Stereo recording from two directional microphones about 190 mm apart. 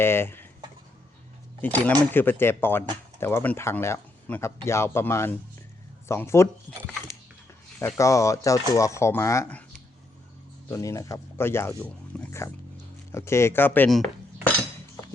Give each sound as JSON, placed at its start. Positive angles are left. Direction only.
{"t": 0.0, "sound": "speech", "side_deg": 10}
{"t": 1.6, "sound": "speech", "side_deg": 10}
{"t": 10.7, "sound": "speech", "side_deg": 15}